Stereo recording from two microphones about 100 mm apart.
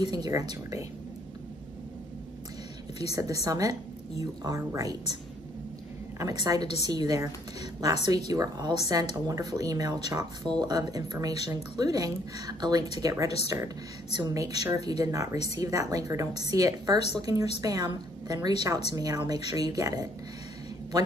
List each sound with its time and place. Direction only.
0.0 s a woman's voice: 40° right (ahead or behind)
3.0 s a woman's voice: 40° right (ahead or behind)
6.1 s a woman's voice: 40° right (ahead or behind)
8.3 s a woman's voice: 40° right (ahead or behind)